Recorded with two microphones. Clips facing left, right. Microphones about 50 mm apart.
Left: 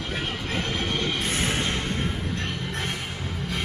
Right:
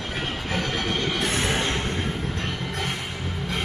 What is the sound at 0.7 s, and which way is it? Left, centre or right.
Music, right.